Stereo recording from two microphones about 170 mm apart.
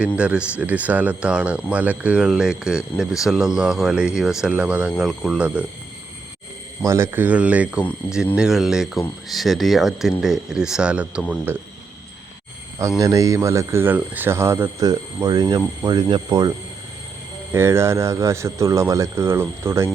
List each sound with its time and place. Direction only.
0.2 s speech: 5° right (ahead or behind)
6.8 s speech: 15° right (ahead or behind)
13.0 s speech: 20° right (ahead or behind)
17.5 s speech: 15° right (ahead or behind)